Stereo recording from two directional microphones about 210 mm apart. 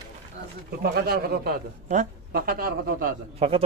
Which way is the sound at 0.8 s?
50° right (ahead or behind).